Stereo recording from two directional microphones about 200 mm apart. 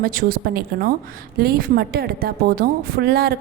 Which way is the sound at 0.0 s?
45° right (ahead or behind).